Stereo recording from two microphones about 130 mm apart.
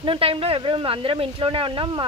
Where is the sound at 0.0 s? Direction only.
45° right (ahead or behind).